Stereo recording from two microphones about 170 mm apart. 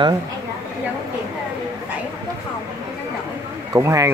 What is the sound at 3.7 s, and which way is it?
Speech, 20° right (ahead or behind).